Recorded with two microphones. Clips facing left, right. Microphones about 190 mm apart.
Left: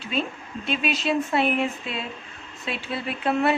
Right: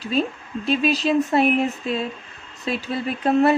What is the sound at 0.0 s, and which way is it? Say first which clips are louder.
Speech: right 5 dB; 40° right (ahead or behind).